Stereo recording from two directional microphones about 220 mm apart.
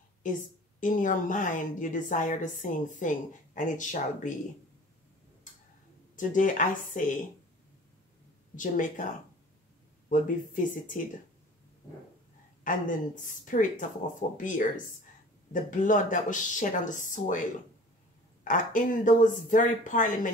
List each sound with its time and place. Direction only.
0.2 s a woman's voice: 35° left (ahead or behind)
6.1 s a woman's voice: 35° left (ahead or behind)
8.5 s a woman's voice: 35° left (ahead or behind)
10.0 s a woman's voice: 35° left (ahead or behind)
12.6 s a woman's voice: 35° left (ahead or behind)